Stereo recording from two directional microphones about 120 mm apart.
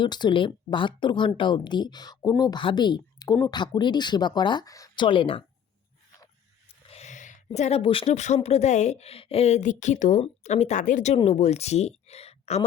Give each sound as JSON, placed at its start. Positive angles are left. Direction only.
{"t": 0.0, "sound": "speech", "side_deg": 40}
{"t": 5.0, "sound": "speech", "side_deg": 45}
{"t": 6.9, "sound": "a sound", "side_deg": 80}
{"t": 7.8, "sound": "speech", "side_deg": 45}
{"t": 8.0, "sound": "a woman's voice", "side_deg": 70}
{"t": 11.3, "sound": "speech", "side_deg": 60}